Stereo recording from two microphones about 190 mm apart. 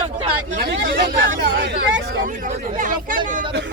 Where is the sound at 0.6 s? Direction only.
60° right (ahead or behind).